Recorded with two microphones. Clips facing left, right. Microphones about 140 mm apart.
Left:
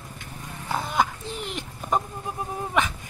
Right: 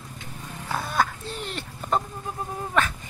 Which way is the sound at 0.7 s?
15° left (ahead or behind).